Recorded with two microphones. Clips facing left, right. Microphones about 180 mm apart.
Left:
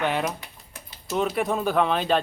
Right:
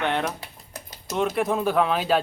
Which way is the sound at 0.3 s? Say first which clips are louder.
Right 4 dB; 40° right (ahead or behind).